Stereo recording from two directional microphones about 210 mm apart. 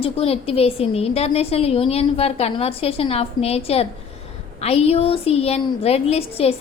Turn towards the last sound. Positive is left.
turn(degrees=30)  # may be behind; listen again after turning